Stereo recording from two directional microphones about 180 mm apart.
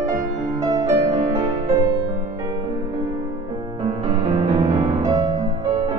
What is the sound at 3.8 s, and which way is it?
Music, 25° right (ahead or behind).